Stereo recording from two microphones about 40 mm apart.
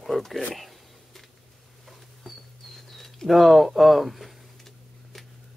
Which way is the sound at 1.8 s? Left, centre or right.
Centre.